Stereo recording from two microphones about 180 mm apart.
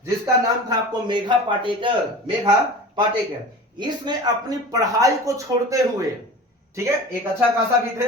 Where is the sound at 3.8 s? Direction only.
25° right (ahead or behind).